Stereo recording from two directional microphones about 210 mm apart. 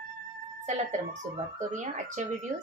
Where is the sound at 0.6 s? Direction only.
35° right (ahead or behind).